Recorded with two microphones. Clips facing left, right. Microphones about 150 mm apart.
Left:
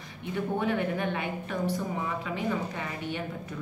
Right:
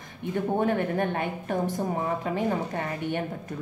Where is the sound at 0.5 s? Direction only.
45° right (ahead or behind).